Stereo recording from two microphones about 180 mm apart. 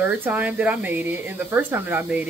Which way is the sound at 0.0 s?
10° right (ahead or behind).